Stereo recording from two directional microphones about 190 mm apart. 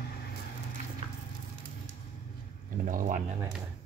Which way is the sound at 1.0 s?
30° right (ahead or behind).